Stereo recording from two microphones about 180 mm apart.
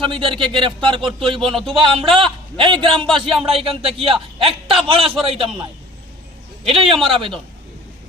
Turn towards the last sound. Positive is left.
turn(degrees=-30)  # may be behind; listen again after turning